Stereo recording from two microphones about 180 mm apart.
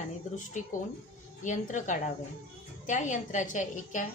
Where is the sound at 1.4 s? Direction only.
45° left (ahead or behind).